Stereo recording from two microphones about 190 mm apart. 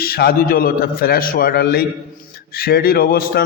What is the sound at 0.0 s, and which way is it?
A man's voice, 55° left (ahead or behind).